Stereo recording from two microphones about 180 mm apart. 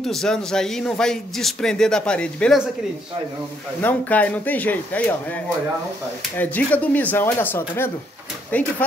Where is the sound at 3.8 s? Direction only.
10° left (ahead or behind).